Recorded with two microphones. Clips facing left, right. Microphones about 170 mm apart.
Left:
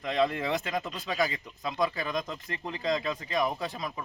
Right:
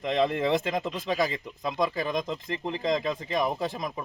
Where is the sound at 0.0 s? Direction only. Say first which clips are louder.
Right 3 dB; 25° right (ahead or behind).